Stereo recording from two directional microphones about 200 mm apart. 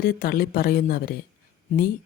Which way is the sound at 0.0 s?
45° left (ahead or behind).